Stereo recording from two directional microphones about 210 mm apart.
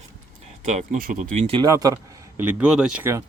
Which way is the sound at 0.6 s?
35° right (ahead or behind).